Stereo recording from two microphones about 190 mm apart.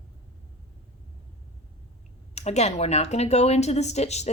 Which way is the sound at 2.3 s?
35° left (ahead or behind).